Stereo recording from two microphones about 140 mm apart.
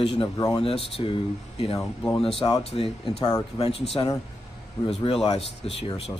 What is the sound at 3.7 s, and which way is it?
A man's voice, 45° left (ahead or behind).